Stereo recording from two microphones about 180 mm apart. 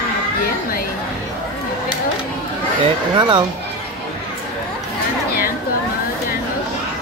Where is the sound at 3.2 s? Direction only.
25° right (ahead or behind).